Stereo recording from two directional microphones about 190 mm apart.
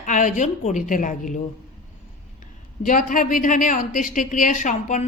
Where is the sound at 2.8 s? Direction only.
40° left (ahead or behind).